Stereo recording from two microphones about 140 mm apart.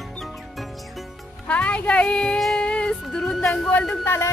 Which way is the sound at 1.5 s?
10° left (ahead or behind).